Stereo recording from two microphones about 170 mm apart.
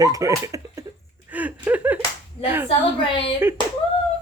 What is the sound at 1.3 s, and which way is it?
Slap, 10° right (ahead or behind).